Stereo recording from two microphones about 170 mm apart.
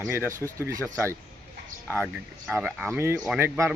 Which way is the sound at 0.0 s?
10° right (ahead or behind).